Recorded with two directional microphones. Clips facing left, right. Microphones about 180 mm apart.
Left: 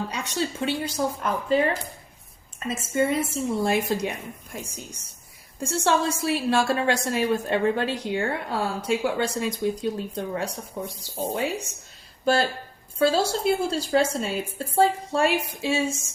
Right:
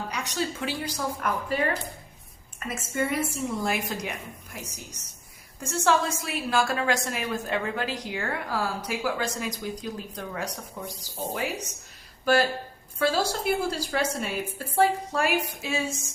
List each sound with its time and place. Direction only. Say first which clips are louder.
0.1 s a woman's voice: left 2 dB; 30° left (ahead or behind)
2.6 s a woman's voice: left 5 dB; 25° left (ahead or behind)
12.2 s a woman's voice: even; 25° left (ahead or behind)